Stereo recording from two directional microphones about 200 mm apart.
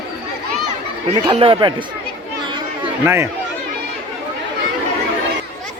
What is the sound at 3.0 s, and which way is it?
Speech, 10° right (ahead or behind).